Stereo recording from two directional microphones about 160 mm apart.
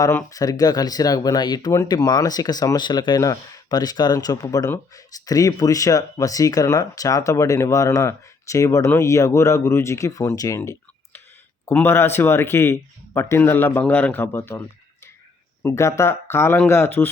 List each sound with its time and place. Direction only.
0.0 s speech: 20° left (ahead or behind)
11.6 s speech: 15° left (ahead or behind)
15.6 s speech: 20° left (ahead or behind)